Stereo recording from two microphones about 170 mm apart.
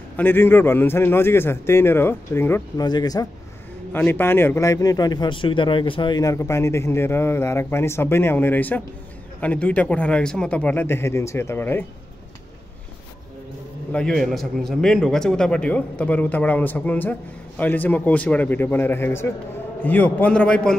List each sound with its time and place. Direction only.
0.2 s a man's voice: 10° left (ahead or behind)
2.8 s a man's voice: 25° left (ahead or behind)
3.9 s a man's voice: 10° left (ahead or behind)
13.9 s a man's voice: 5° left (ahead or behind)